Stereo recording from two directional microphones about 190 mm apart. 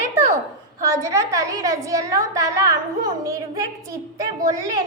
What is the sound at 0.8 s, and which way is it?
A woman's voice, 15° right (ahead or behind).